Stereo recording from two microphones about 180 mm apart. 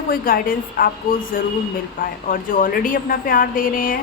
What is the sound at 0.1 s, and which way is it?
A woman's voice, 50° left (ahead or behind).